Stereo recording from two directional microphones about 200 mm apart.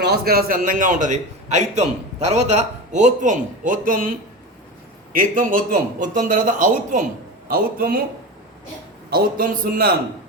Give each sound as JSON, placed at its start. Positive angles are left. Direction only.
{"t": 0.0, "sound": "a man's voice", "side_deg": -50}
{"t": 5.1, "sound": "a man's voice", "side_deg": -40}
{"t": 9.0, "sound": "a man's voice", "side_deg": -50}